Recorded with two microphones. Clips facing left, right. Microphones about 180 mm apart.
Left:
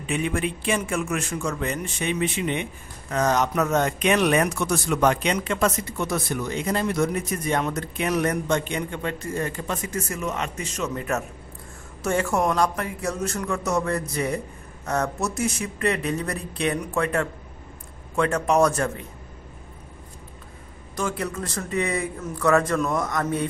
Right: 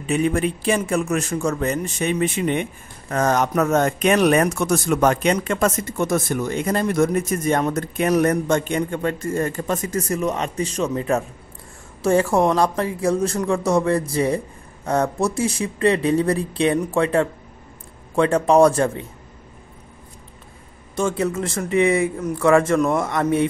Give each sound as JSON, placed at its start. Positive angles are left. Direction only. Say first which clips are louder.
{"t": 0.0, "sound": "a man's voice", "louder": "right 6 dB", "side_deg": -40}
{"t": 20.9, "sound": "speech", "louder": "right 6 dB", "side_deg": -25}